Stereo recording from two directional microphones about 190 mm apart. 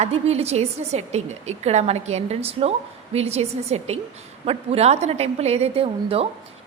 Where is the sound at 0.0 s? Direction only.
35° right (ahead or behind).